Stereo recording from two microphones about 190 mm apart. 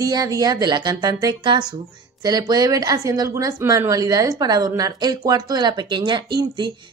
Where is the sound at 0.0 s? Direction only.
20° right (ahead or behind).